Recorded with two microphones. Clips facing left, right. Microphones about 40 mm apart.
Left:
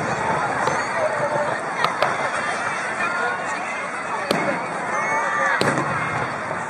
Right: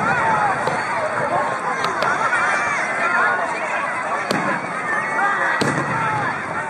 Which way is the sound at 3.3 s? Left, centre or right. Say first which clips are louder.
Right 4 dB; centre.